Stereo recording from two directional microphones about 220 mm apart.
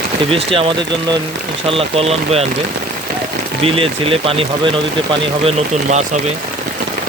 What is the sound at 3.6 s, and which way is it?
Speech, 25° right (ahead or behind).